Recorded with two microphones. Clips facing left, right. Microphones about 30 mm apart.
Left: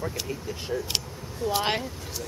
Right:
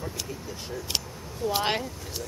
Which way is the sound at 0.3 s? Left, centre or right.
Centre.